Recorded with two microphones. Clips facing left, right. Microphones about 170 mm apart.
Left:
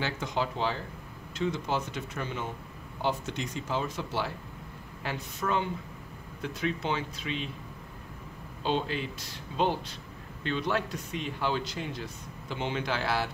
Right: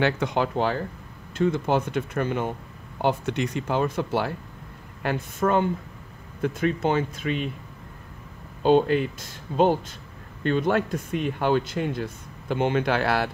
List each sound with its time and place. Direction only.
0.0 s speech: 65° right (ahead or behind)
8.6 s speech: 50° right (ahead or behind)